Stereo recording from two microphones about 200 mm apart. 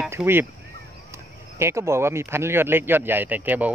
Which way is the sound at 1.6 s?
15° right (ahead or behind).